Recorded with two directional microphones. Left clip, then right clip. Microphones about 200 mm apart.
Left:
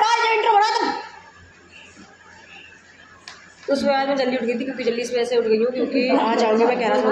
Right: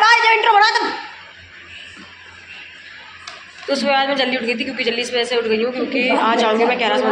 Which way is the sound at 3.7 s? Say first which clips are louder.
Right 3 dB; 5° left (ahead or behind).